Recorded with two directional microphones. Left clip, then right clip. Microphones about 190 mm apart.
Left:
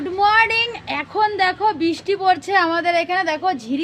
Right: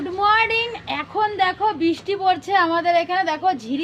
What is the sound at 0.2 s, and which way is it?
Speech, 20° left (ahead or behind).